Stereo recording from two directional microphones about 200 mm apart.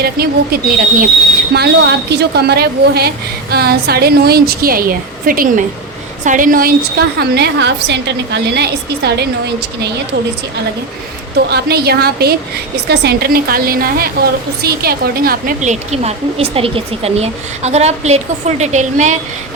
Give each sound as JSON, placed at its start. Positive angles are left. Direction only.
{"t": 0.0, "sound": "a woman's voice", "side_deg": -50}
{"t": 11.4, "sound": "a woman's voice", "side_deg": -55}